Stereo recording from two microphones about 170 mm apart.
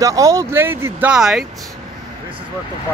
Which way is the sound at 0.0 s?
20° right (ahead or behind).